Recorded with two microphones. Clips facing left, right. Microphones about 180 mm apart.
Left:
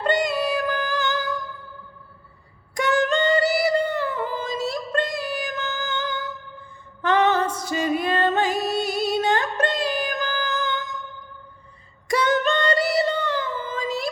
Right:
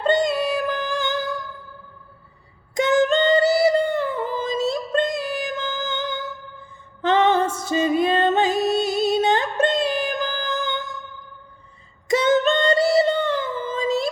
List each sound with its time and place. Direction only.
0.0 s music: 25° right (ahead or behind)
2.7 s music: 20° right (ahead or behind)
12.0 s a sound: 20° right (ahead or behind)